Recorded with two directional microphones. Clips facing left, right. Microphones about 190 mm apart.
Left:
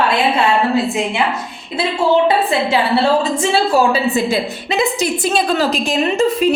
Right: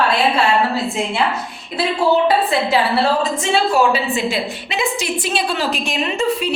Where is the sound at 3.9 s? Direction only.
40° left (ahead or behind).